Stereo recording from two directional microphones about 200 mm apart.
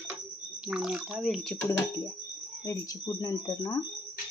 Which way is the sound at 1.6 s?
10° left (ahead or behind).